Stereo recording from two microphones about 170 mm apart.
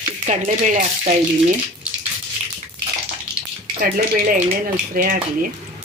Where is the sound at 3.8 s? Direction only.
60° right (ahead or behind).